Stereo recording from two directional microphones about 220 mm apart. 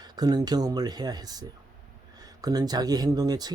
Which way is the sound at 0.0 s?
20° right (ahead or behind).